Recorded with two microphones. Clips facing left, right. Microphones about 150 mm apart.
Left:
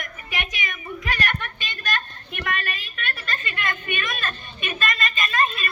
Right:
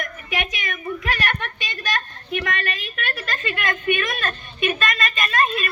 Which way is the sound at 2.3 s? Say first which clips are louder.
Right 4 dB; 50° right (ahead or behind).